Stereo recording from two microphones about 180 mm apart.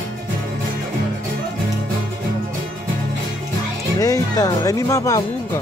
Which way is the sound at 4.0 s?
20° left (ahead or behind).